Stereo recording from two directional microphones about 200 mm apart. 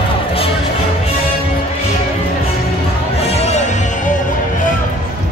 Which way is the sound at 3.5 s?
40° left (ahead or behind).